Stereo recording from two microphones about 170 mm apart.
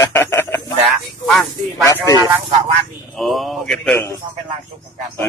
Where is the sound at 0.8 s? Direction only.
Centre (ahead or behind).